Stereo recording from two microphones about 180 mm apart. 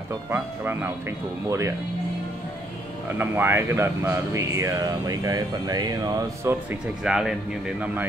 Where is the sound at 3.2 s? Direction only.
10° right (ahead or behind).